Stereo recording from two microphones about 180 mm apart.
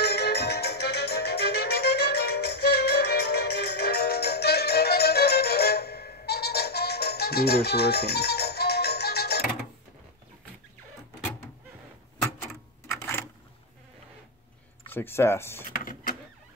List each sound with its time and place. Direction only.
0.0 s music: 65° left (ahead or behind)
14.8 s speech: 10° left (ahead or behind)
15.7 s power windows: 50° left (ahead or behind)